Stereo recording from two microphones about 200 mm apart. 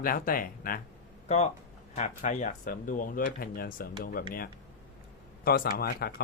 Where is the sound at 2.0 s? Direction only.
40° left (ahead or behind).